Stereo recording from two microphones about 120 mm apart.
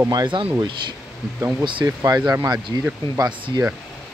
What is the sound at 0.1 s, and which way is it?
Speech, 40° right (ahead or behind).